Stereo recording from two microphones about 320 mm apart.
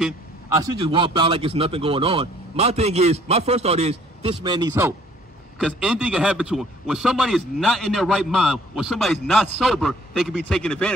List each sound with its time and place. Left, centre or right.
0.6 s a man's voice: centre